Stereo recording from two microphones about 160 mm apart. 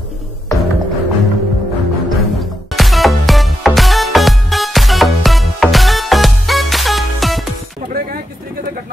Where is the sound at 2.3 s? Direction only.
Centre (ahead or behind).